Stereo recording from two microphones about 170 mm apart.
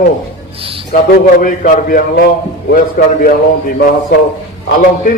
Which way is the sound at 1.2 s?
55° left (ahead or behind).